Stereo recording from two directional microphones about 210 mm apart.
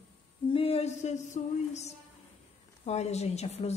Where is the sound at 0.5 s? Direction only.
25° left (ahead or behind).